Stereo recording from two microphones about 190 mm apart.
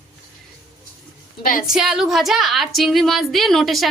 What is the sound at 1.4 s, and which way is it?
Speech, 45° left (ahead or behind).